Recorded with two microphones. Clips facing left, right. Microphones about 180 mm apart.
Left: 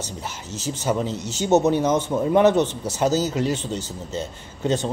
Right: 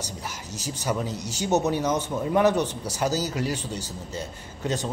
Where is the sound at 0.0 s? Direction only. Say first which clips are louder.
Left 3 dB; 25° left (ahead or behind).